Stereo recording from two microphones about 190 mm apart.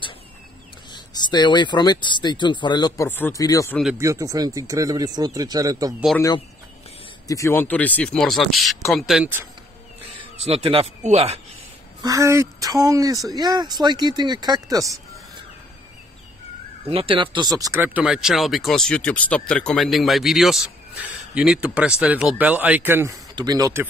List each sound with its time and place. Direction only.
0.9 s speech: 20° left (ahead or behind)
4.0 s speech: 15° right (ahead or behind)
6.1 s speech: 20° left (ahead or behind); by 9.3 s centre (ahead or behind)
10.4 s speech: 30° right (ahead or behind)
12.0 s speech: 15° right (ahead or behind)
16.9 s speech: 30° right (ahead or behind)